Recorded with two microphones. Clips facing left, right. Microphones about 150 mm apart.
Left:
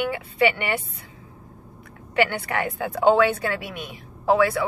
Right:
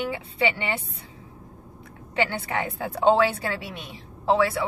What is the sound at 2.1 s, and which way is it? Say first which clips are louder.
A woman's voice: left 3 dB; 25° right (ahead or behind).